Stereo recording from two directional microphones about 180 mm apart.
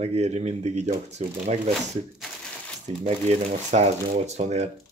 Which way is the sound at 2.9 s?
35° right (ahead or behind).